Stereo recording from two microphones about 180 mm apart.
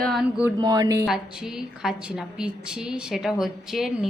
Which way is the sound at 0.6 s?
20° right (ahead or behind).